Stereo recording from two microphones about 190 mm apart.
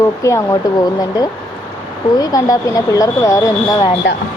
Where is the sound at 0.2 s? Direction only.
15° left (ahead or behind).